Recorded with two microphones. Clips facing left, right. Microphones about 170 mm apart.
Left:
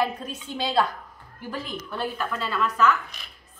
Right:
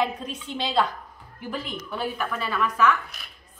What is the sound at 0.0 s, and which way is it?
Speech, 5° left (ahead or behind).